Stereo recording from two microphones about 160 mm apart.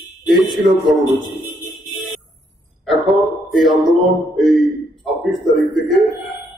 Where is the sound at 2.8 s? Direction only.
Centre (ahead or behind).